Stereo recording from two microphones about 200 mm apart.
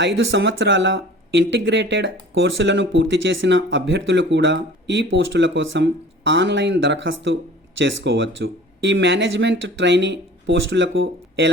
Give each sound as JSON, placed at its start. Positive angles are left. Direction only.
{"t": 0.0, "sound": "speech", "side_deg": -65}